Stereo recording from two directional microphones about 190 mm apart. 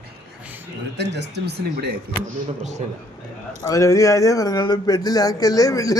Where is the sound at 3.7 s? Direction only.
15° left (ahead or behind).